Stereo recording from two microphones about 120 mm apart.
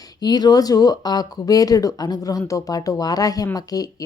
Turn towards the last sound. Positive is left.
turn(degrees=30)  # may be behind; listen again after turning